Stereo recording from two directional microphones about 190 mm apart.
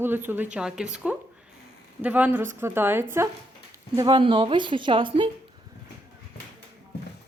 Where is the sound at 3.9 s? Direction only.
25° right (ahead or behind).